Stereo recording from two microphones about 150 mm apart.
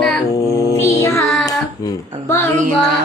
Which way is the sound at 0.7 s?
20° left (ahead or behind).